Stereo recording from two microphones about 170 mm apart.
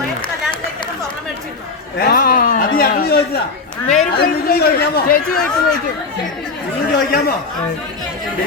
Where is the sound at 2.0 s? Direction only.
60° left (ahead or behind).